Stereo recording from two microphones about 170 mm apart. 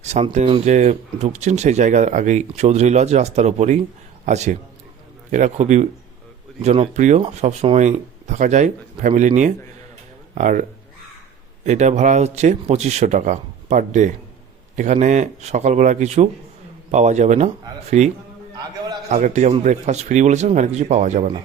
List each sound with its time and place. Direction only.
0.0 s speech: 40° right (ahead or behind)
19.1 s speech: 45° right (ahead or behind)